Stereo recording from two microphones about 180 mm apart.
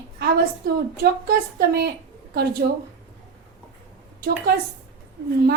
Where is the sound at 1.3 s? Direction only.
60° right (ahead or behind).